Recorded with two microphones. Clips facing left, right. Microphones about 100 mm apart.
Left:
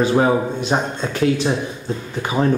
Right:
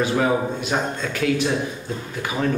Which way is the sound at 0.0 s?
30° left (ahead or behind).